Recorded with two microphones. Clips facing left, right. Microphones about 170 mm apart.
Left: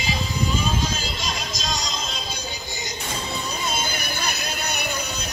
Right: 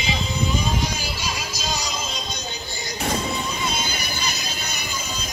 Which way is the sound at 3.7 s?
50° left (ahead or behind).